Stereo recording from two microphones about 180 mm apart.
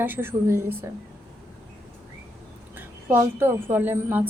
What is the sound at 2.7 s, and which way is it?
A woman's voice, 10° right (ahead or behind).